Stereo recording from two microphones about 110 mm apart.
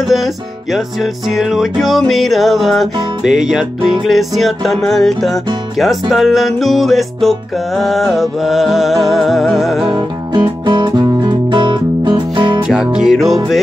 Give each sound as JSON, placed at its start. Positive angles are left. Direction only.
{"t": 0.0, "sound": "music", "side_deg": 0}
{"t": 9.8, "sound": "music", "side_deg": -45}
{"t": 12.6, "sound": "music", "side_deg": -5}